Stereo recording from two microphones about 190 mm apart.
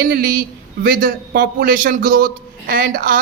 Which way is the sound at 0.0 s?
50° right (ahead or behind).